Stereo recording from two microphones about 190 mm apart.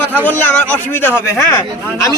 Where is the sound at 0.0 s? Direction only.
10° left (ahead or behind).